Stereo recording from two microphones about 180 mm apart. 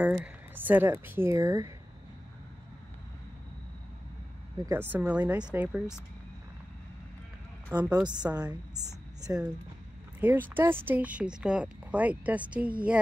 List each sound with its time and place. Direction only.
0.0 s speech: 5° right (ahead or behind)
4.6 s speech: 10° right (ahead or behind)
7.7 s speech: 10° right (ahead or behind)
10.5 s speech: 10° right (ahead or behind)